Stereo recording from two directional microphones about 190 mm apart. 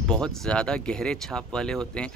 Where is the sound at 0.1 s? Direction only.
5° left (ahead or behind).